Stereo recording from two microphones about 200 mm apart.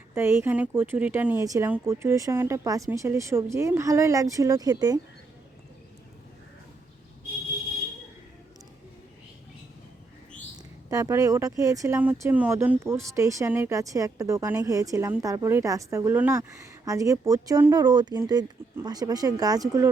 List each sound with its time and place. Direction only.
0.1 s speech: 10° right (ahead or behind)
10.8 s speech: 15° right (ahead or behind)